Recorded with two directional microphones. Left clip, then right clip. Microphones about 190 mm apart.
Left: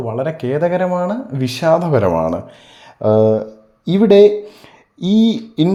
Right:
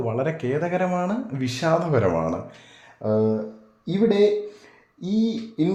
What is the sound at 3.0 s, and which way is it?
Speech, 40° left (ahead or behind).